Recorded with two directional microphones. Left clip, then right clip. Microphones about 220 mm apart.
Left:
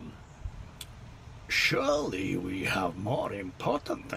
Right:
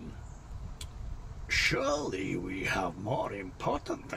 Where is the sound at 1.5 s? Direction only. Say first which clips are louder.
Left 2 dB; 25° left (ahead or behind).